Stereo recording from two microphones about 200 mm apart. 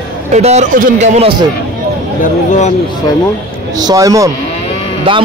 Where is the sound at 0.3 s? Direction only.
35° right (ahead or behind).